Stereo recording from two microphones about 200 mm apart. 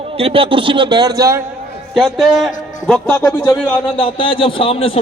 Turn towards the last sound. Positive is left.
turn(degrees=30)  # may be behind; listen again after turning